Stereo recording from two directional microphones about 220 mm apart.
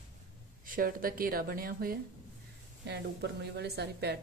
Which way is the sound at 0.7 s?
40° right (ahead or behind).